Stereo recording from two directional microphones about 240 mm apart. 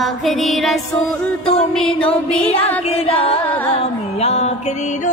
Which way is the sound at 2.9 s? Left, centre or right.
Left.